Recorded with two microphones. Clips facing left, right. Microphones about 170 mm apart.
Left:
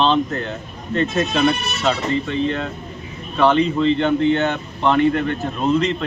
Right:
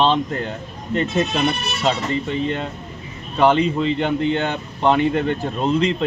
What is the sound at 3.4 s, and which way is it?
Speech, 15° right (ahead or behind).